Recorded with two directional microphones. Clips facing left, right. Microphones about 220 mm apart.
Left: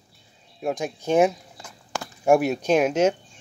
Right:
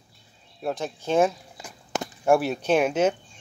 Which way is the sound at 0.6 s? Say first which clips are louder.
Left 2 dB; 15° left (ahead or behind).